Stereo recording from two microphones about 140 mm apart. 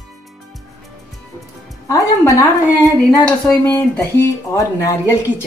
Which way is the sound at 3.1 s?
5° left (ahead or behind).